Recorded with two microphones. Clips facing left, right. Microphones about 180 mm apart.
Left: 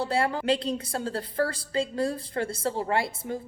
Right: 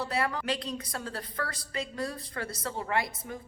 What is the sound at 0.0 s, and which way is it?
A woman's voice, 30° left (ahead or behind).